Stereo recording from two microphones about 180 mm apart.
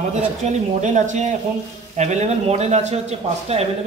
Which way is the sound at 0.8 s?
45° right (ahead or behind).